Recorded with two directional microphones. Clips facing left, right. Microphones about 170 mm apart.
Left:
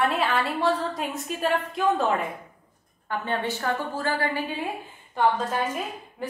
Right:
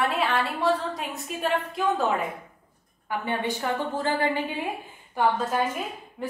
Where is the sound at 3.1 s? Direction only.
15° right (ahead or behind).